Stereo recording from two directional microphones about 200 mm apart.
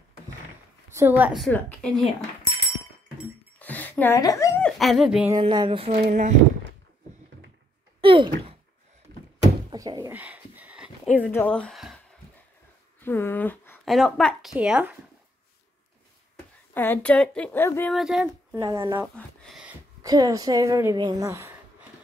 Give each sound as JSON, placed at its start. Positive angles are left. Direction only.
{"t": 0.9, "sound": "a woman's voice", "side_deg": -10}
{"t": 3.5, "sound": "dog", "side_deg": 10}
{"t": 4.6, "sound": "speech", "side_deg": 0}
{"t": 5.3, "sound": "speech", "side_deg": -20}
{"t": 8.0, "sound": "a sound", "side_deg": -25}
{"t": 9.7, "sound": "door", "side_deg": -20}
{"t": 10.1, "sound": "a sound", "side_deg": -10}
{"t": 11.3, "sound": "speech", "side_deg": 5}
{"t": 13.0, "sound": "speech", "side_deg": 10}
{"t": 16.7, "sound": "a woman's voice", "side_deg": 10}
{"t": 17.9, "sound": "speech", "side_deg": -5}
{"t": 18.5, "sound": "a woman's voice", "side_deg": -15}
{"t": 19.1, "sound": "a sound", "side_deg": 0}
{"t": 20.0, "sound": "a woman's voice", "side_deg": -20}